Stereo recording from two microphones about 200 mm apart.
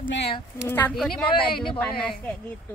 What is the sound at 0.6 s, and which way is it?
Speech, 10° left (ahead or behind).